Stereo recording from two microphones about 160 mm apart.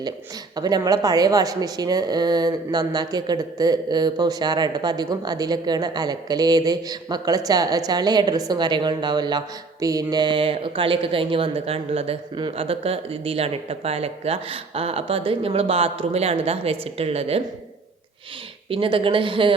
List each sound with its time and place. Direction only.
0.5 s speech: 25° right (ahead or behind)
18.7 s speech: 35° right (ahead or behind)